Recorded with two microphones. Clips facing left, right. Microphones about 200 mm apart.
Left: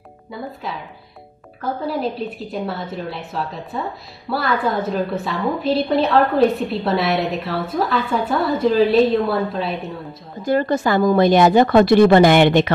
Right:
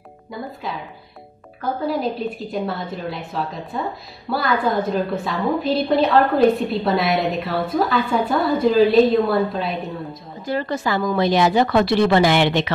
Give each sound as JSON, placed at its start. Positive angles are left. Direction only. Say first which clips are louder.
{"t": 0.3, "sound": "a woman's voice", "louder": "even", "side_deg": 0}
{"t": 1.8, "sound": "a woman's voice", "louder": "right 1 dB", "side_deg": 0}
{"t": 10.4, "sound": "a woman's voice", "louder": "left 5 dB", "side_deg": 50}